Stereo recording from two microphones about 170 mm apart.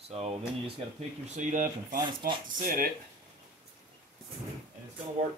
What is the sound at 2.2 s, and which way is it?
Speech, 65° right (ahead or behind).